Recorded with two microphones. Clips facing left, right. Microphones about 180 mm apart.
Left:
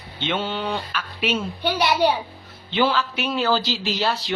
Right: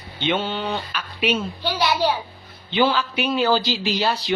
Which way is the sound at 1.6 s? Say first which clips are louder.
Left 2 dB; 20° left (ahead or behind).